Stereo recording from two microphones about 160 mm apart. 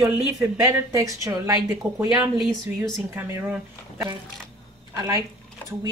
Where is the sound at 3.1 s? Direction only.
10° right (ahead or behind).